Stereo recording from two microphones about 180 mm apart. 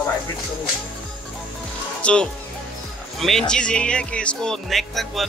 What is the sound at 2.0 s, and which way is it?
Speech, 5° left (ahead or behind).